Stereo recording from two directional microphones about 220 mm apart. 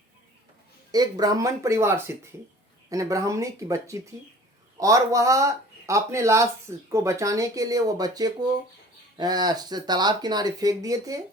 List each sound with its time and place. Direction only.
0.9 s speech: 15° right (ahead or behind)